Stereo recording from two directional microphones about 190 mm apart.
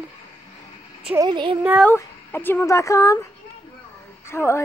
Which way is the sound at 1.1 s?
25° right (ahead or behind).